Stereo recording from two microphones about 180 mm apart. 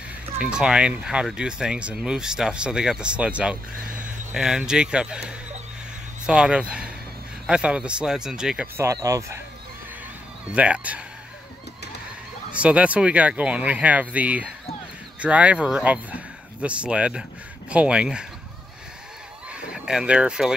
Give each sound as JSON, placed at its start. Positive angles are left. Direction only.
{"t": 0.4, "sound": "speech", "side_deg": -5}
{"t": 8.7, "sound": "speech", "side_deg": -15}
{"t": 10.5, "sound": "speech", "side_deg": -5}
{"t": 12.5, "sound": "speech", "side_deg": -5}
{"t": 19.5, "sound": "speech", "side_deg": -5}